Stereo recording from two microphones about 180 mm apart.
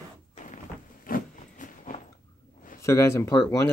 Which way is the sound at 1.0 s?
50° left (ahead or behind).